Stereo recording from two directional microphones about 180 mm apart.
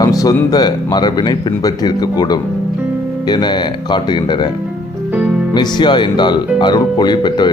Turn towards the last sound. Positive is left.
turn(degrees=25)  # may be behind; listen again after turning